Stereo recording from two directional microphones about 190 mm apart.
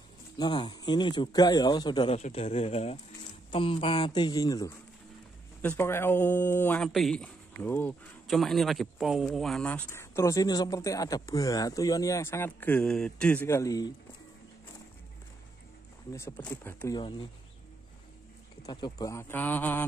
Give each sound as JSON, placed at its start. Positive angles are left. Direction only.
{"t": 0.4, "sound": "a man's voice", "side_deg": 25}
{"t": 2.1, "sound": "a man's voice", "side_deg": 35}
{"t": 16.1, "sound": "speech", "side_deg": 15}
{"t": 18.7, "sound": "speech", "side_deg": 25}